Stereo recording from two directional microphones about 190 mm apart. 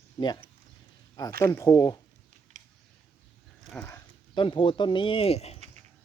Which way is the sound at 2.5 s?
40° right (ahead or behind).